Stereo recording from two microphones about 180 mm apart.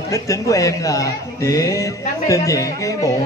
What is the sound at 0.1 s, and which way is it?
Speech, 20° left (ahead or behind).